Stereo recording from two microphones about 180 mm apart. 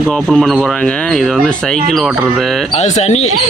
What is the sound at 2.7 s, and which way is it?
Speech, 40° left (ahead or behind).